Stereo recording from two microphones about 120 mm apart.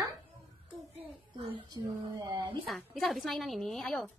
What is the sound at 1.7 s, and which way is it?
Speech, 35° right (ahead or behind).